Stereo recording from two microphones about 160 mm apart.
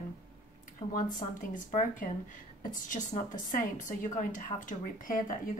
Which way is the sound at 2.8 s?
50° left (ahead or behind).